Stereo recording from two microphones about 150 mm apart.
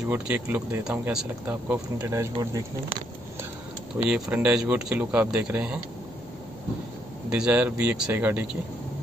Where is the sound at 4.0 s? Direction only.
10° right (ahead or behind).